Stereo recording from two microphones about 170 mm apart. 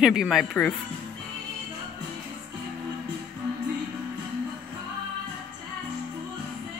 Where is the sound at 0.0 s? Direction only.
5° right (ahead or behind).